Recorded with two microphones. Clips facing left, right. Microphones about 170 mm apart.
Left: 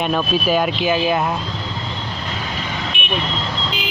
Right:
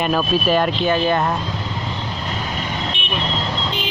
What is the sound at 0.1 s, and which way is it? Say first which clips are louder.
Speech: right 1 dB; centre (ahead or behind).